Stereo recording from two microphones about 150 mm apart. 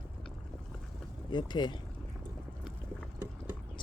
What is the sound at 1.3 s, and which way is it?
Speech, 30° left (ahead or behind).